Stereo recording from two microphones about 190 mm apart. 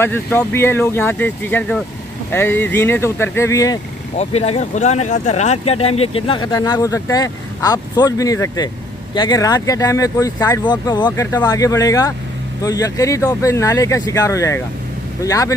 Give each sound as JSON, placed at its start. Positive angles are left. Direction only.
{"t": 0.0, "sound": "speech", "side_deg": 10}
{"t": 4.2, "sound": "speech", "side_deg": 35}